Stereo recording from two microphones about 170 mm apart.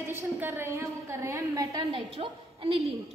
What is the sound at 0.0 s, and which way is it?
A woman's voice, 15° right (ahead or behind).